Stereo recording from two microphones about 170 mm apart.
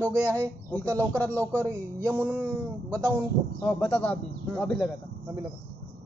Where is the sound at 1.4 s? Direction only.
15° right (ahead or behind).